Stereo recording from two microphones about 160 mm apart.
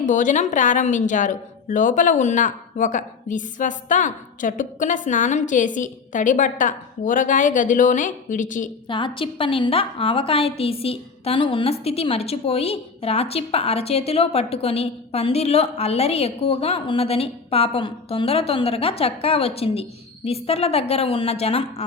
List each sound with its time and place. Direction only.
0.0 s a woman's voice: 55° left (ahead or behind)
8.9 s a woman's voice: 30° left (ahead or behind)